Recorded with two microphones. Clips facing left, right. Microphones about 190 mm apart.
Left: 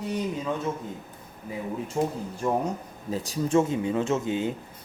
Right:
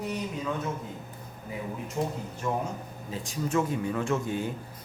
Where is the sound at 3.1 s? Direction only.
35° left (ahead or behind); by 4.5 s 20° left (ahead or behind).